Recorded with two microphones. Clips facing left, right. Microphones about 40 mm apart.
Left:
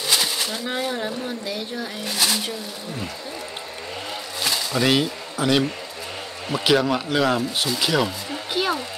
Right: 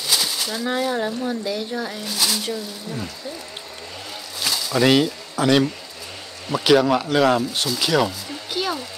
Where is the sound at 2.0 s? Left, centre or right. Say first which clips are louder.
Left 2 dB; centre.